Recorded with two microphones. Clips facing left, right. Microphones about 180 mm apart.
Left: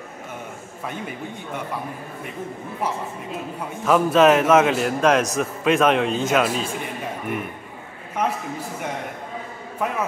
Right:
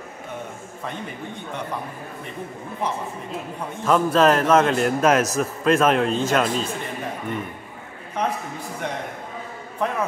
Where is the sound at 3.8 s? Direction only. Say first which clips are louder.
Left 2 dB; 5° left (ahead or behind).